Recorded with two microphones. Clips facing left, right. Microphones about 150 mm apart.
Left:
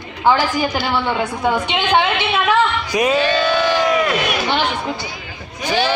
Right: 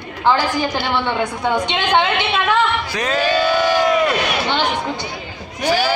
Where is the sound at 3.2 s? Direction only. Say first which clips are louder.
Even; 10° right (ahead or behind).